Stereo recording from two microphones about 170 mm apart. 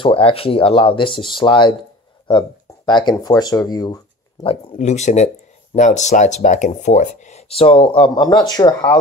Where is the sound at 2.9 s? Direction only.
25° left (ahead or behind).